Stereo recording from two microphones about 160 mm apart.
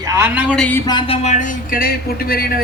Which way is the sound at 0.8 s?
30° left (ahead or behind).